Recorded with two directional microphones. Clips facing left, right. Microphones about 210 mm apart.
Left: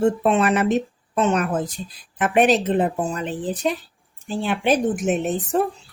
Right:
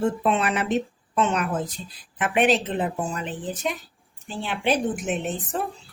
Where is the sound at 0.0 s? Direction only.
45° left (ahead or behind).